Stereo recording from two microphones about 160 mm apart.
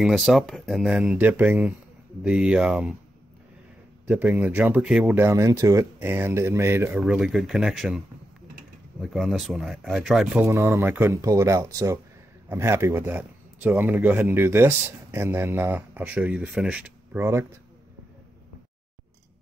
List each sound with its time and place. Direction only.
0.0 s speech: centre (ahead or behind)
1.1 s speech: 10° right (ahead or behind)
4.1 s speech: 5° right (ahead or behind)
5.2 s speech: 20° right (ahead or behind)
7.0 s speech: 5° right (ahead or behind)
9.0 s speech: centre (ahead or behind)
10.5 s speech: 15° right (ahead or behind)